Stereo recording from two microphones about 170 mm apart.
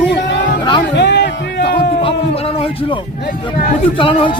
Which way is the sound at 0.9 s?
90° left.